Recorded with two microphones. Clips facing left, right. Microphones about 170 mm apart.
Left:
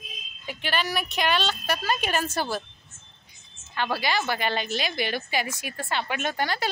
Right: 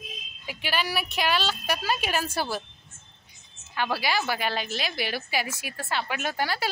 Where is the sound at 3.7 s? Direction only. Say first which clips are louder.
Left 1 dB; 10° right (ahead or behind).